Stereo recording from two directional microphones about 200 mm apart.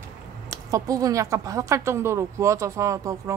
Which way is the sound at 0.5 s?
15° right (ahead or behind).